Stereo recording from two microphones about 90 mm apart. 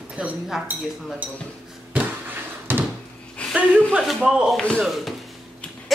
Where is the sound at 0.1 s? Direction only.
15° right (ahead or behind).